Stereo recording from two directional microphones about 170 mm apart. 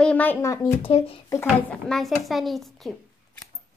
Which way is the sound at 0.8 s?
35° left (ahead or behind).